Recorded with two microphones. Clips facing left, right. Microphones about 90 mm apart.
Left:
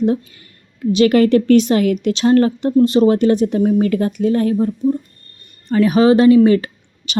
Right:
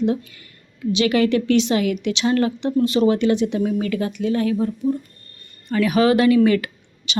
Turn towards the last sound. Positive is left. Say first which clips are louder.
# left 5 dB
turn(degrees=45)  # may be behind; listen again after turning